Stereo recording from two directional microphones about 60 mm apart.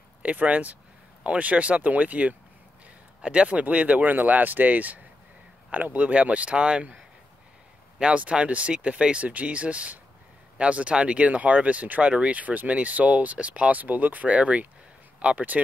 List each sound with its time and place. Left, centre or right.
0.2 s speech: right
8.0 s speech: centre